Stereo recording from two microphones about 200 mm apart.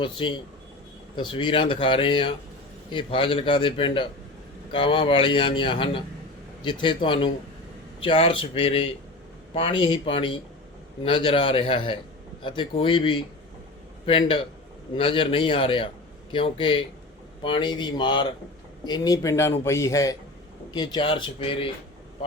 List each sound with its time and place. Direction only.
0.0 s a man's voice: 25° left (ahead or behind)